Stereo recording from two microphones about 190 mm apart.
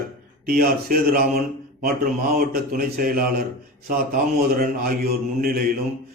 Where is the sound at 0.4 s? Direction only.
50° right (ahead or behind).